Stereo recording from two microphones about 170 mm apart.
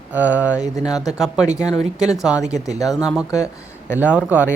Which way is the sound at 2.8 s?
20° left (ahead or behind).